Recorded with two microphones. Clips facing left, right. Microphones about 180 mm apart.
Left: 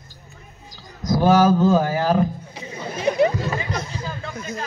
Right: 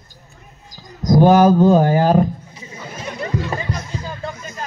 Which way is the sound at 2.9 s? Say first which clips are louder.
Left 10 dB; 65° left (ahead or behind).